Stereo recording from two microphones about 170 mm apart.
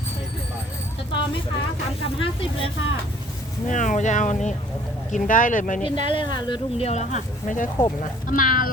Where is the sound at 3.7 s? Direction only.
45° left (ahead or behind).